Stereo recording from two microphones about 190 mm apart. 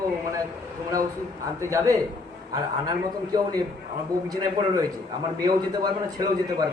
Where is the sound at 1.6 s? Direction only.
15° right (ahead or behind).